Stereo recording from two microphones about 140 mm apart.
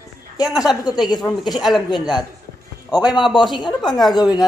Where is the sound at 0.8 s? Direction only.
30° left (ahead or behind).